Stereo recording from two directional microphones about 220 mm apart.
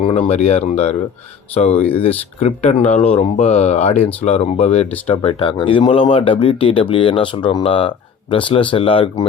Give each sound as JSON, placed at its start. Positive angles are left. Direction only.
{"t": 0.0, "sound": "speech", "side_deg": 30}